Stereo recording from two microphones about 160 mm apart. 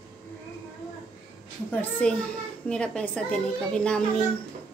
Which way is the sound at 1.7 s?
10° left (ahead or behind).